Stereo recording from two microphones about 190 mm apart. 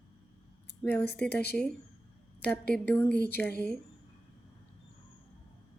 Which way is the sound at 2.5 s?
5° left (ahead or behind).